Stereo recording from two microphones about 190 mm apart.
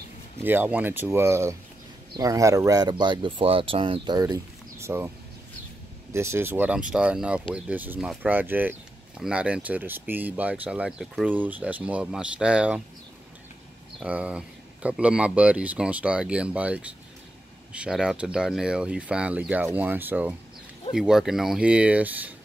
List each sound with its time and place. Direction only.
0.4 s speech: 10° right (ahead or behind)
6.1 s speech: 15° right (ahead or behind)
13.9 s speech: 5° right (ahead or behind)